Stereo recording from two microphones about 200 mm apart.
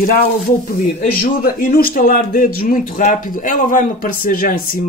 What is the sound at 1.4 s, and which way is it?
Speech, 45° left (ahead or behind).